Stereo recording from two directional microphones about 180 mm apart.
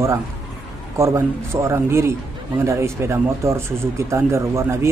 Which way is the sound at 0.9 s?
15° right (ahead or behind).